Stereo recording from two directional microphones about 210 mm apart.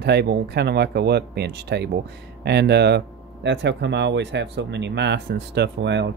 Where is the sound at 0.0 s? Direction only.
50° right (ahead or behind).